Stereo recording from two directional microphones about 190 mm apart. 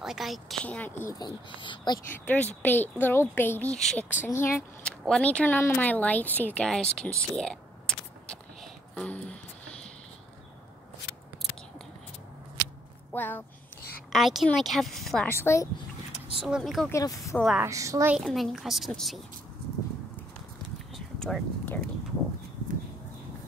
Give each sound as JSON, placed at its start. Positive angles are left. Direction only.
{"t": 0.0, "sound": "speech", "side_deg": 0}
{"t": 1.1, "sound": "speech", "side_deg": 25}
{"t": 2.0, "sound": "speech", "side_deg": 10}
{"t": 8.9, "sound": "a sound", "side_deg": 5}
{"t": 13.1, "sound": "speech", "side_deg": 10}
{"t": 14.1, "sound": "speech", "side_deg": 0}
{"t": 16.3, "sound": "speech", "side_deg": -5}
{"t": 16.9, "sound": "speech", "side_deg": 15}
{"t": 17.6, "sound": "a woman's voice", "side_deg": -15}
{"t": 18.1, "sound": "speech", "side_deg": 0}
{"t": 20.9, "sound": "a sound", "side_deg": 0}